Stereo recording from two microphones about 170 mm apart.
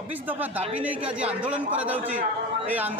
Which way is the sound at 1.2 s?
10° right (ahead or behind).